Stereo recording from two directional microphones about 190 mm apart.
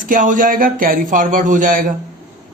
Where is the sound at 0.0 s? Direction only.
45° right (ahead or behind).